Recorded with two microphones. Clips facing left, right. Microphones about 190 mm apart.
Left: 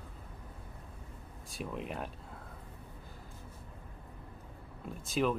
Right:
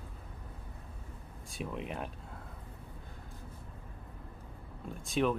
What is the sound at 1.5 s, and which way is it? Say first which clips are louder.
Speech: even; centre (ahead or behind).